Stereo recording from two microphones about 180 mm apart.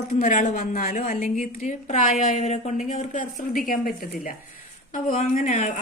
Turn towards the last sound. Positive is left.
turn(degrees=45)  # may be behind; listen again after turning